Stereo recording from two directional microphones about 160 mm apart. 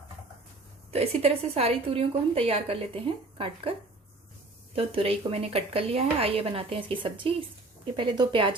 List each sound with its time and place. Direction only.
0.9 s a woman's voice: 40° right (ahead or behind)
4.7 s a woman's voice: 35° right (ahead or behind)